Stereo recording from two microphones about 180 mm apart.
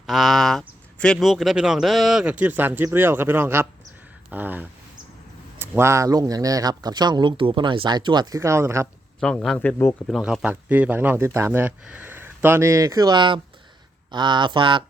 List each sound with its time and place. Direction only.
0.0 s a sound: centre (ahead or behind)
0.9 s speech: 5° left (ahead or behind); by 8.9 s 15° right (ahead or behind)
9.2 s speech: 5° left (ahead or behind)
10.1 s speech: centre (ahead or behind); by 14.8 s 25° right (ahead or behind)